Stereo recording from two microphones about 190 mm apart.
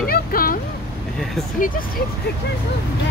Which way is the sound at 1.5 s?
45° left (ahead or behind).